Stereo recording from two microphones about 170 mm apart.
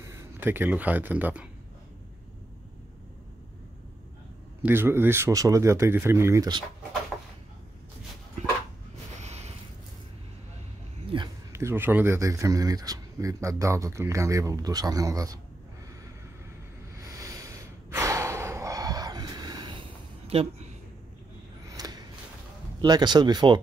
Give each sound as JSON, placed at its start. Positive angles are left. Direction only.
{"t": 0.0, "sound": "speech", "side_deg": -20}
{"t": 4.6, "sound": "speech", "side_deg": -15}
{"t": 9.2, "sound": "a sound", "side_deg": -40}
{"t": 11.1, "sound": "a sound", "side_deg": -30}
{"t": 11.5, "sound": "speech", "side_deg": -15}
{"t": 17.0, "sound": "gasp", "side_deg": -20}
{"t": 20.2, "sound": "speech", "side_deg": -35}
{"t": 21.6, "sound": "a sound", "side_deg": -20}
{"t": 22.8, "sound": "speech", "side_deg": -25}